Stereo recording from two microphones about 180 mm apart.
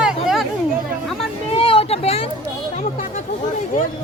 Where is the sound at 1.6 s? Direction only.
30° left (ahead or behind).